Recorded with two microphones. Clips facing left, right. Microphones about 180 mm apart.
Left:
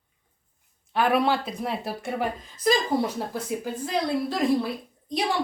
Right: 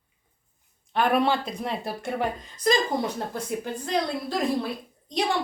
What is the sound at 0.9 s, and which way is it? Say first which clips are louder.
A woman's voice: even; 5° left (ahead or behind).